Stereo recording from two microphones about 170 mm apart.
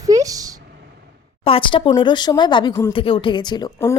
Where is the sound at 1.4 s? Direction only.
30° left (ahead or behind).